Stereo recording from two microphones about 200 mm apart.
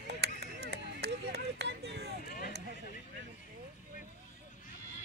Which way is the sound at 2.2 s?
45° left (ahead or behind).